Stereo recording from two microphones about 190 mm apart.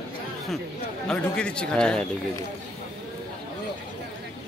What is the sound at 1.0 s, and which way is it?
A man's voice, 5° left (ahead or behind).